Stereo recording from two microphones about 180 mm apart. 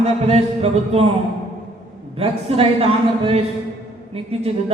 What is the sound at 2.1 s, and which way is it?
A man's voice, 35° right (ahead or behind).